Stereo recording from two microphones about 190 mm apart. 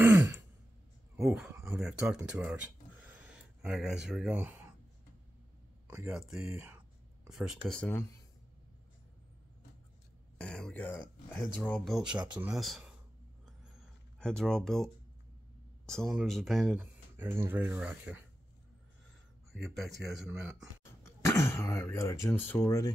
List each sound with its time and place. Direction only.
0.0 s throat clearing: 15° right (ahead or behind)
1.3 s speech: centre (ahead or behind)
5.9 s speech: 5° right (ahead or behind)
10.3 s a man's voice: 5° left (ahead or behind)
12.1 s speech: 25° right (ahead or behind)
12.4 s speech: centre (ahead or behind)
14.2 s speech: 5° left (ahead or behind)
19.5 s speech: centre (ahead or behind)
21.0 s speech: 15° left (ahead or behind)